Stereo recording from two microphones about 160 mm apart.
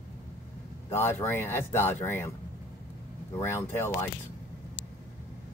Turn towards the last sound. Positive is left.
turn(degrees=15)  # may be behind; listen again after turning